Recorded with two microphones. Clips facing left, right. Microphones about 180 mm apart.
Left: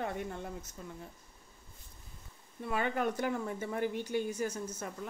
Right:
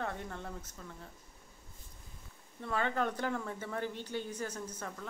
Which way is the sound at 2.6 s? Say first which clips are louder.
Left 1 dB; 10° left (ahead or behind).